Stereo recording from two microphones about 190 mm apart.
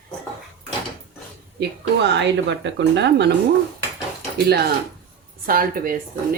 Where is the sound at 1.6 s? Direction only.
65° right (ahead or behind).